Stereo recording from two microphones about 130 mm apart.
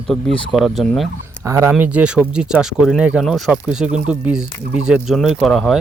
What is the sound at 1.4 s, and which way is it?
Speech, 25° right (ahead or behind).